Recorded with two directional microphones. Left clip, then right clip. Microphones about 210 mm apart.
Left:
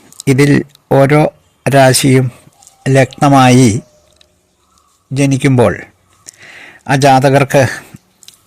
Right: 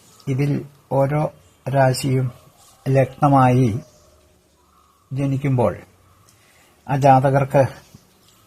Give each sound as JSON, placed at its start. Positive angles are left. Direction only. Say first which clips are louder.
{"t": 0.3, "sound": "speech", "louder": "left 14 dB", "side_deg": 45}
{"t": 2.8, "sound": "speech", "louder": "left 8 dB", "side_deg": 30}
{"t": 5.1, "sound": "speech", "louder": "left 11 dB", "side_deg": 35}